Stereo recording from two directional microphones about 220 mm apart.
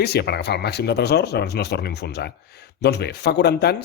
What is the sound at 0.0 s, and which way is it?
Speech, 45° left (ahead or behind).